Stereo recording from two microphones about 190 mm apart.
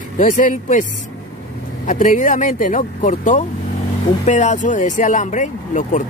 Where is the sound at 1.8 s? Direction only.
45° left (ahead or behind).